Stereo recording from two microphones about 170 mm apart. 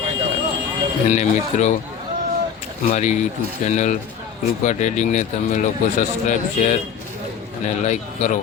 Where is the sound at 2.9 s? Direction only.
45° left (ahead or behind).